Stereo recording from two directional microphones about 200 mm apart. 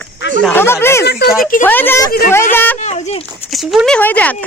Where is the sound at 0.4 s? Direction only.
10° left (ahead or behind).